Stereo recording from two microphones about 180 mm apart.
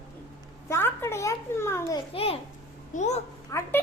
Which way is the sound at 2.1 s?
30° left (ahead or behind).